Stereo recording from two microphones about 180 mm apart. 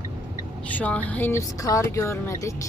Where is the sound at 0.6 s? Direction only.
10° left (ahead or behind).